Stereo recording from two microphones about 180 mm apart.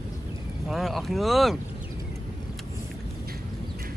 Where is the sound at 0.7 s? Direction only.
Centre (ahead or behind).